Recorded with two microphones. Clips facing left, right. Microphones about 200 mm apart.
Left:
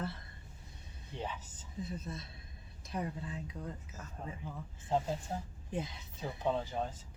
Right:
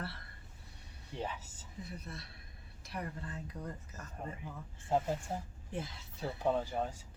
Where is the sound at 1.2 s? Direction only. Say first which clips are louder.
Right 1 dB; 10° right (ahead or behind).